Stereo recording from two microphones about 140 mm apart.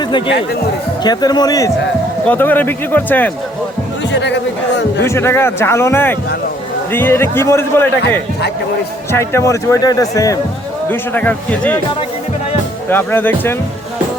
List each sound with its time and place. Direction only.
1.0 s speech: 30° left (ahead or behind)
2.2 s speech: 15° left (ahead or behind)
5.0 s speech: 20° left (ahead or behind)
10.8 s speech: 15° left (ahead or behind)
12.9 s speech: 15° left (ahead or behind)